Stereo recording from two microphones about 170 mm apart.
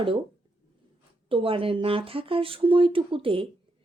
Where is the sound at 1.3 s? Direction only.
30° right (ahead or behind).